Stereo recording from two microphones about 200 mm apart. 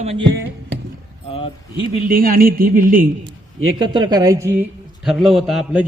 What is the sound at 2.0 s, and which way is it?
Speech, 45° right (ahead or behind).